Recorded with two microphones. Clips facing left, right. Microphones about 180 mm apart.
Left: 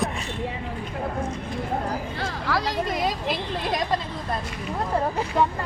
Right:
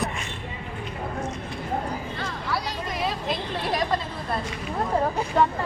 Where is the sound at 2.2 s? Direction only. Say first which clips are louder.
Left 4 dB; 90° left.